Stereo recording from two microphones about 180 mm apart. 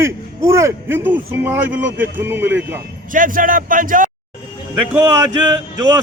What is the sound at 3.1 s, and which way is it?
Speech, 50° right (ahead or behind).